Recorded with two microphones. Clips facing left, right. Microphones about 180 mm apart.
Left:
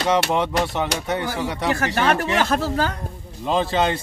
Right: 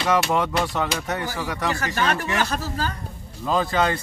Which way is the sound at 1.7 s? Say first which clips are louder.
Left 4 dB; 55° left (ahead or behind).